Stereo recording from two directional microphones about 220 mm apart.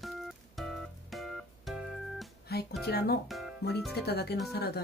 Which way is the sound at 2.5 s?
45° left (ahead or behind).